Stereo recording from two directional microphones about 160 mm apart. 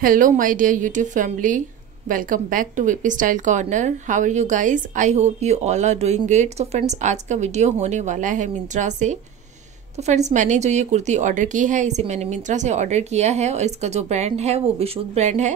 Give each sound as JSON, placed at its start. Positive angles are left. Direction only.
{"t": 0.0, "sound": "a woman's voice", "side_deg": -60}